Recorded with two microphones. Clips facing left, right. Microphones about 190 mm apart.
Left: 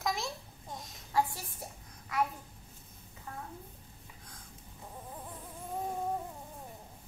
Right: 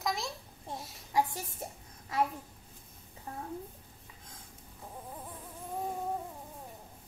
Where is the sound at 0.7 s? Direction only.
5° right (ahead or behind).